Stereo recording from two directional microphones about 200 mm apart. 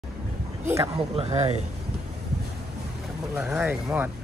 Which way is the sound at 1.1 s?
30° right (ahead or behind).